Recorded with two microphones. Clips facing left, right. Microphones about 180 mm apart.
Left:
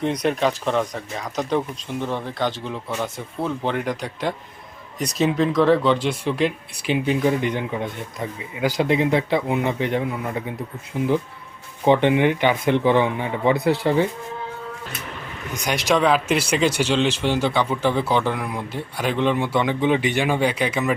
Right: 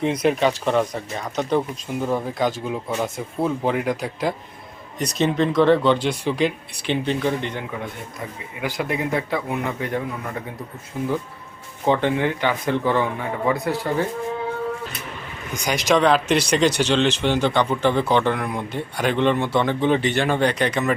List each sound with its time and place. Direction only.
0.0 s speech: centre (ahead or behind)
8.7 s speech: 25° left (ahead or behind)
15.6 s speech: 5° left (ahead or behind)